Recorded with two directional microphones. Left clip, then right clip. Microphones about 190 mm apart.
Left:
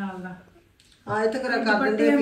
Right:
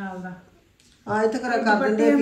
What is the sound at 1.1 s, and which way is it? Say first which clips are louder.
Speech: right 2 dB; 35° right (ahead or behind).